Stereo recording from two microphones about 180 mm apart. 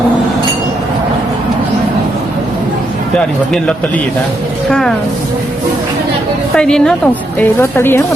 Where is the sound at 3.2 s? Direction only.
5° left (ahead or behind).